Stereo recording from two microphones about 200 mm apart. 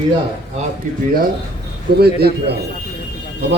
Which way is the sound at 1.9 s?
50° right (ahead or behind).